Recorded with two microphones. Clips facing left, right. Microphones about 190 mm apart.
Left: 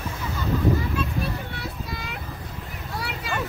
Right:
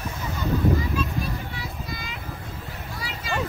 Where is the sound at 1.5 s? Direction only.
60° left (ahead or behind).